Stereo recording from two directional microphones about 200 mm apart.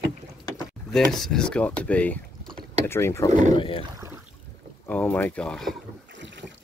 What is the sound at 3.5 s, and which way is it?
Speech, 25° left (ahead or behind).